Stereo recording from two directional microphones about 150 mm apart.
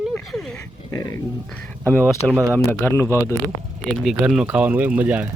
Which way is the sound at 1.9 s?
5° left (ahead or behind).